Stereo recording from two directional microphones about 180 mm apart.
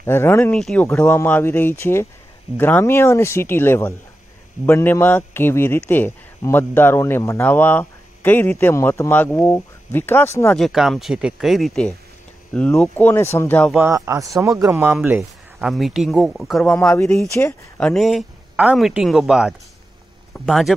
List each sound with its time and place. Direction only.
0.0 s speech: 15° left (ahead or behind)
10.5 s speech: centre (ahead or behind)
13.7 s speech: 10° right (ahead or behind)
15.0 s speech: 5° right (ahead or behind)